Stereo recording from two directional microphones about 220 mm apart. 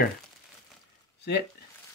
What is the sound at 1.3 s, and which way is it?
Speech, 50° left (ahead or behind).